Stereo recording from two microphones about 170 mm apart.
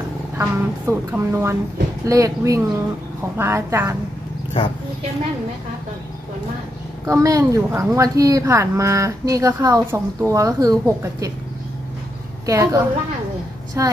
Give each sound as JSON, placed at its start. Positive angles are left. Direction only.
{"t": 0.4, "sound": "a woman's voice", "side_deg": -15}
{"t": 7.1, "sound": "speech", "side_deg": -20}
{"t": 12.4, "sound": "a woman's voice", "side_deg": -20}